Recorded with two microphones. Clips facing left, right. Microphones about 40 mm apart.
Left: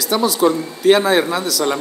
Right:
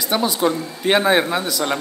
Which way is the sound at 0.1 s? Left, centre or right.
Centre.